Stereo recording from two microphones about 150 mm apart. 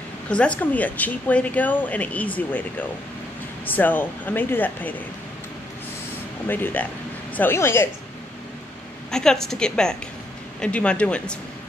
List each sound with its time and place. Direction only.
0.3 s speech: 10° left (ahead or behind)
3.6 s speech: 10° left (ahead or behind)
6.4 s speech: 15° left (ahead or behind)
9.1 s a woman's voice: 5° left (ahead or behind)